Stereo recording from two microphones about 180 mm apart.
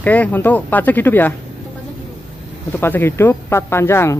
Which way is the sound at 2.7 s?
10° left (ahead or behind).